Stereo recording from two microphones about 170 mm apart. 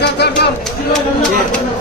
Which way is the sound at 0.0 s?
75° left (ahead or behind).